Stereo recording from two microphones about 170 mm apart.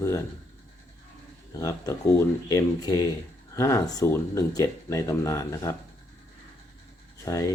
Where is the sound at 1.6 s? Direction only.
20° left (ahead or behind).